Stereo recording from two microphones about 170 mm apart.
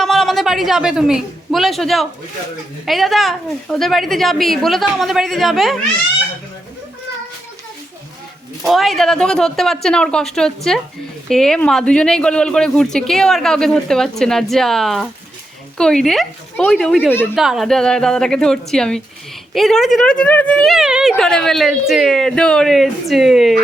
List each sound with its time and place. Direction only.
0.0 s a man's voice: centre (ahead or behind)
8.6 s a woman's voice: centre (ahead or behind)